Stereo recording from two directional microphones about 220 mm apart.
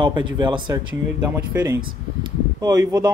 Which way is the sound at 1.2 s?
10° right (ahead or behind).